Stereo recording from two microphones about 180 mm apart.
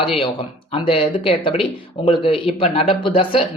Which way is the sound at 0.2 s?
30° left (ahead or behind).